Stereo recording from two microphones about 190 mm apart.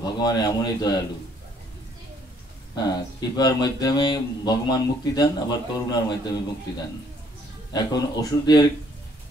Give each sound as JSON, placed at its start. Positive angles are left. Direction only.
{"t": 0.0, "sound": "speech", "side_deg": 20}
{"t": 2.7, "sound": "speech", "side_deg": 20}
{"t": 7.7, "sound": "speech", "side_deg": 20}